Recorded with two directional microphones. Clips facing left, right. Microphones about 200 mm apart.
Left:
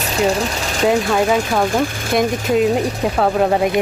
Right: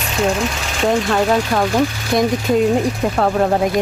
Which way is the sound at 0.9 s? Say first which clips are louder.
Even; 5° left (ahead or behind).